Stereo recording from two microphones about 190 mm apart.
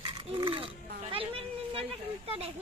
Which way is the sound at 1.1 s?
30° right (ahead or behind).